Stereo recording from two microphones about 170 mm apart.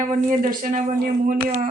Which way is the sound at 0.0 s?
50° right (ahead or behind).